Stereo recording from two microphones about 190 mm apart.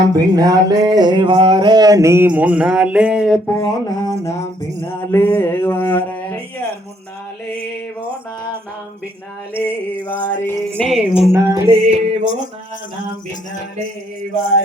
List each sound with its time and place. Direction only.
0.1 s a sound: 20° right (ahead or behind); by 3.5 s centre (ahead or behind)
3.5 s music: 20° left (ahead or behind)
4.9 s speech: 10° left (ahead or behind)
9.6 s music: 10° left (ahead or behind)
11.3 s music: 15° right (ahead or behind)
11.7 s music: 35° right (ahead or behind)